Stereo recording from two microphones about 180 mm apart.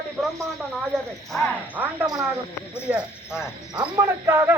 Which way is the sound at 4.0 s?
20° right (ahead or behind).